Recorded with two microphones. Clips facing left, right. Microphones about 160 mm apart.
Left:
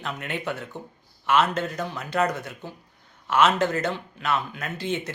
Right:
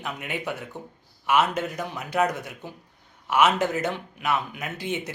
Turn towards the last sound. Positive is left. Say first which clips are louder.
# left 1 dB
turn(degrees=-15)  # may be behind; listen again after turning